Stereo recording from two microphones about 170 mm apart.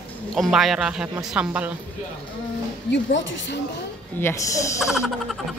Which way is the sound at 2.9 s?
90° left.